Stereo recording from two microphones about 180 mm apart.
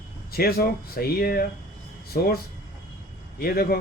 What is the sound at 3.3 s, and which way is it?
Speech, 55° left (ahead or behind).